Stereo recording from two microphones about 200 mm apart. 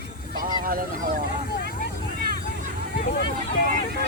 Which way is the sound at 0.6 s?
45° right (ahead or behind).